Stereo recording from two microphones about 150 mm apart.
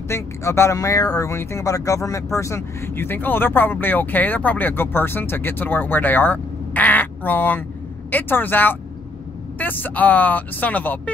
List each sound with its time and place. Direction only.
0.1 s speech: 20° left (ahead or behind)